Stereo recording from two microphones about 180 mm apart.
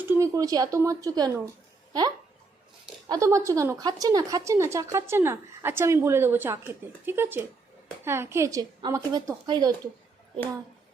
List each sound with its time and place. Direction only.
0.0 s a woman's voice: 15° right (ahead or behind)